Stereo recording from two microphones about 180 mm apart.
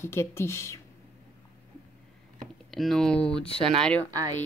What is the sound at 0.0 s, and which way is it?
Speech, 15° left (ahead or behind).